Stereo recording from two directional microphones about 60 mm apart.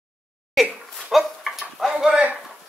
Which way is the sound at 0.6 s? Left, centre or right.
Centre.